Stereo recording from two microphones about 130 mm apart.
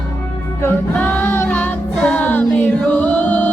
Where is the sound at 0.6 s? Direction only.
15° left (ahead or behind).